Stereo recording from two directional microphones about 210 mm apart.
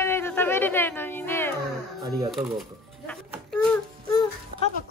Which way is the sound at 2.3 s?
Centre (ahead or behind).